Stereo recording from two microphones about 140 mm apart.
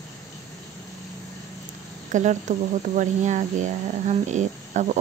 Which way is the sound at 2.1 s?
60° right (ahead or behind).